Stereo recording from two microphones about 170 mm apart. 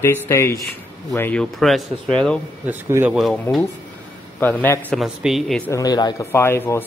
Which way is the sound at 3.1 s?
Centre (ahead or behind).